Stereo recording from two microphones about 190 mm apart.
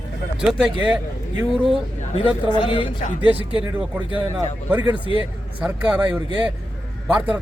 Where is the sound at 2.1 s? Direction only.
30° left (ahead or behind).